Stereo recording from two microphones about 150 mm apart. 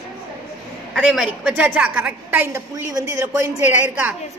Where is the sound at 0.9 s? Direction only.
5° right (ahead or behind); by 4.1 s 20° right (ahead or behind).